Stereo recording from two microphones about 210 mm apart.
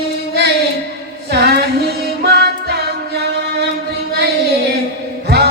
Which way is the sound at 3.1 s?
50° right (ahead or behind).